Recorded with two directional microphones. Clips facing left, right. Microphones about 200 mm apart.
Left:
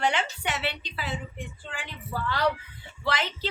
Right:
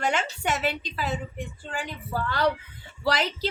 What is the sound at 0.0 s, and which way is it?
A woman's voice, 45° right (ahead or behind).